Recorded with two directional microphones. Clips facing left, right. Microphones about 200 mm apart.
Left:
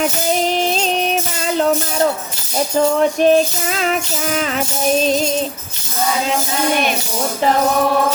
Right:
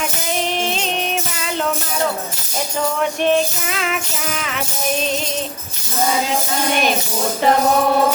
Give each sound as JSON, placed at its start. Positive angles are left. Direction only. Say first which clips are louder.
{"t": 0.3, "sound": "music", "louder": "left 3 dB", "side_deg": 35}
{"t": 3.0, "sound": "music", "louder": "left 2 dB", "side_deg": 35}
{"t": 5.0, "sound": "music", "louder": "left 6 dB", "side_deg": 35}